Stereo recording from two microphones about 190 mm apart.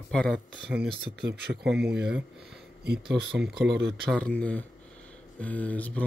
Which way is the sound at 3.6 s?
70° right (ahead or behind).